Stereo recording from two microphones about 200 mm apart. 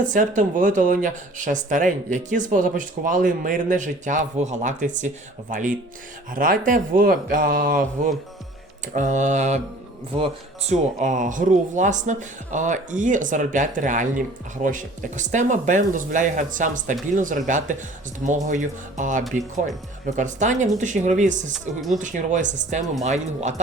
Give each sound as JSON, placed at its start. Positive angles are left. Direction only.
{"t": 0.1, "sound": "speech", "side_deg": -40}
{"t": 10.7, "sound": "speech", "side_deg": -40}
{"t": 21.5, "sound": "speech", "side_deg": 0}
{"t": 21.9, "sound": "speech", "side_deg": -40}